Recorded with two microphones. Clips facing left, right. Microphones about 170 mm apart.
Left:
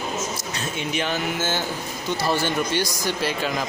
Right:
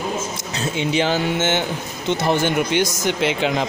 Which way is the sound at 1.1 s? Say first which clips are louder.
Right 5 dB; 25° right (ahead or behind).